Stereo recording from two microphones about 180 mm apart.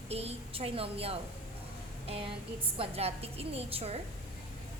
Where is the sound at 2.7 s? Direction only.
30° right (ahead or behind).